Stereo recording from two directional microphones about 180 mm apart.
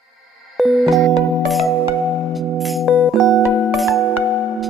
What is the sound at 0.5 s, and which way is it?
Music, centre (ahead or behind).